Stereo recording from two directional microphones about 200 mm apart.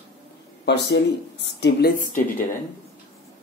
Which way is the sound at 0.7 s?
60° left (ahead or behind).